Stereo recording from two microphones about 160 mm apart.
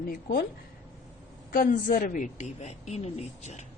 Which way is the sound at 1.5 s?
60° left (ahead or behind).